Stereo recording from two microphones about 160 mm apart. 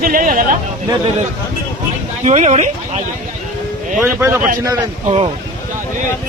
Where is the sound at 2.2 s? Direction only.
45° right (ahead or behind).